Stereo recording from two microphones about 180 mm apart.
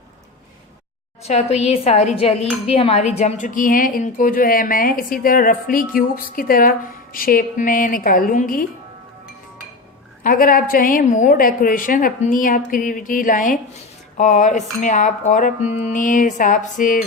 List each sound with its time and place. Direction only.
1.2 s a woman's voice: 35° left (ahead or behind)
10.2 s a woman's voice: 50° left (ahead or behind)